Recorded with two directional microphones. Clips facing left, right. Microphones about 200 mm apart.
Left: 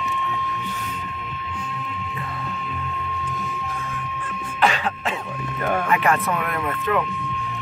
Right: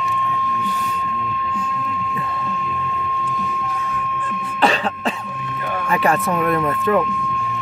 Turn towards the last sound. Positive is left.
turn(degrees=-35)  # may be behind; listen again after turning